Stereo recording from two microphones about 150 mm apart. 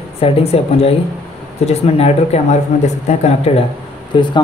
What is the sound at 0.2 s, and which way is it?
A man's voice, 40° left (ahead or behind).